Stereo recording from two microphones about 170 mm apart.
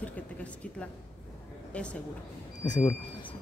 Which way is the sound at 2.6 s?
25° left (ahead or behind).